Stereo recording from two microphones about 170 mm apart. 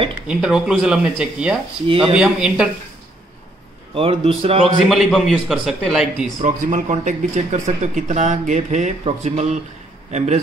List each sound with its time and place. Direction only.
0.3 s a man's voice: 5° right (ahead or behind)
3.9 s a man's voice: 35° right (ahead or behind)
4.8 s a man's voice: centre (ahead or behind)
6.4 s a man's voice: 45° right (ahead or behind)